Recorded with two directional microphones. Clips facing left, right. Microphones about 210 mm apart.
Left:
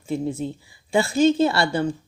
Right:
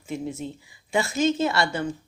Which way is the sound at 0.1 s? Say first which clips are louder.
Left 5 dB; 30° left (ahead or behind).